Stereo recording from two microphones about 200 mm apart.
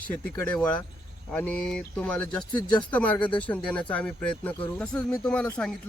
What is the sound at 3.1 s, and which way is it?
Speech, 25° left (ahead or behind).